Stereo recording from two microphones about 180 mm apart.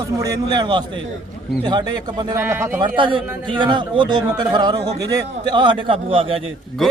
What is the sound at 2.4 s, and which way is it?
Speech, 10° right (ahead or behind).